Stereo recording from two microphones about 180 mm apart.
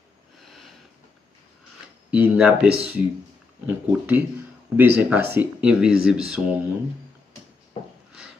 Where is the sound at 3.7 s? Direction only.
10° right (ahead or behind).